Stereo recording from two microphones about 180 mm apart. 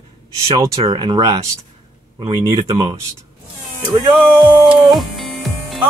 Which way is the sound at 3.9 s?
10° right (ahead or behind).